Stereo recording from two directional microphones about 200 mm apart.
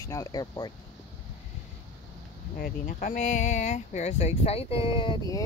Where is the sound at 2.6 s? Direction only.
45° left (ahead or behind); by 5.4 s 25° left (ahead or behind).